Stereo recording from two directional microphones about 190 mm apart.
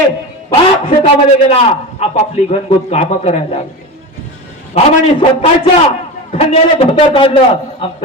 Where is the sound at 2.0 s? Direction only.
35° left (ahead or behind).